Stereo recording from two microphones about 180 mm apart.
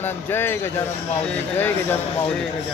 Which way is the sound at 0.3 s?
15° left (ahead or behind).